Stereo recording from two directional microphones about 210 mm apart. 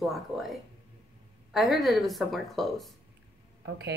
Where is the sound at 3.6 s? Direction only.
50° right (ahead or behind).